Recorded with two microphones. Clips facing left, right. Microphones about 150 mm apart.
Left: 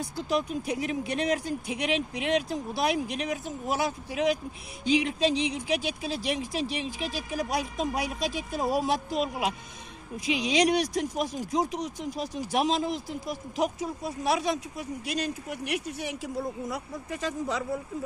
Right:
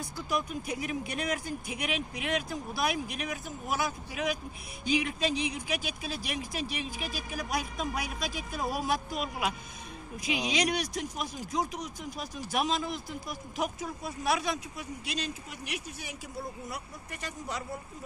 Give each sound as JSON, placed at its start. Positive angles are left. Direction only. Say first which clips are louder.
{"t": 0.3, "sound": "speech", "louder": "left 4 dB", "side_deg": 30}